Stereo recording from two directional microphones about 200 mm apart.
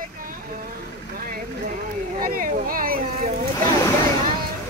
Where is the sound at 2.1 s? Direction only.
45° right (ahead or behind).